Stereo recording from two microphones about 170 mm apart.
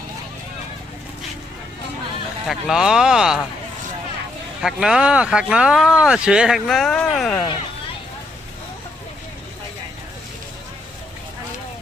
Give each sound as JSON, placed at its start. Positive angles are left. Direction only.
{"t": 2.5, "sound": "speech", "side_deg": 0}
{"t": 4.6, "sound": "speech", "side_deg": -5}